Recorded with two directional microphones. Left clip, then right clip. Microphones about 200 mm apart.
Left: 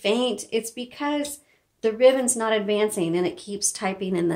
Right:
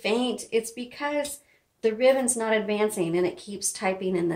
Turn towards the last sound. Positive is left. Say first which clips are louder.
# even
turn(degrees=45)  # may be behind; listen again after turning